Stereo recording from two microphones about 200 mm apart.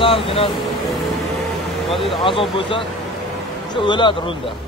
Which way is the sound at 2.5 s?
25° left (ahead or behind).